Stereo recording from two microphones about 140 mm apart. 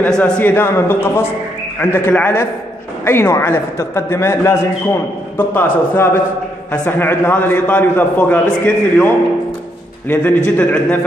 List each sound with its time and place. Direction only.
0.0 s a man's voice: 10° left (ahead or behind)